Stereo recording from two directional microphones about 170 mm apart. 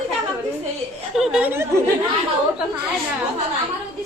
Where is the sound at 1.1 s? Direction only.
Centre (ahead or behind).